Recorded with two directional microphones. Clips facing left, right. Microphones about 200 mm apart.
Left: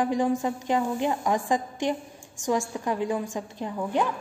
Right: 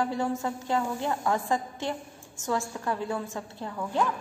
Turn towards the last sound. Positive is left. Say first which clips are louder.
# left 2 dB
turn(degrees=15)  # may be behind; listen again after turning